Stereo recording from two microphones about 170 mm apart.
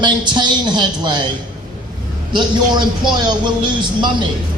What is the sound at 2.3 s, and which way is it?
A man's voice, 25° right (ahead or behind).